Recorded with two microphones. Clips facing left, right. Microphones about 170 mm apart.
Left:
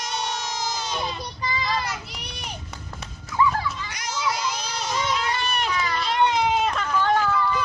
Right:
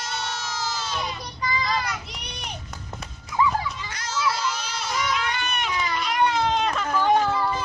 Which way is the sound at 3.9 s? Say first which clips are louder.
Right 3 dB; 15° left (ahead or behind).